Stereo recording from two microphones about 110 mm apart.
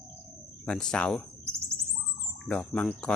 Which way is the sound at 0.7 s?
5° left (ahead or behind).